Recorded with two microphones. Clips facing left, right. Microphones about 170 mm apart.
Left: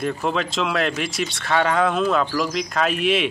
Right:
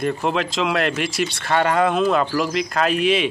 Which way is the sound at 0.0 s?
Centre (ahead or behind).